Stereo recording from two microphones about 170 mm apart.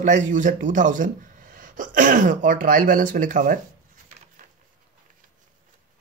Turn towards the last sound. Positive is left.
turn(degrees=-50)  # may be behind; listen again after turning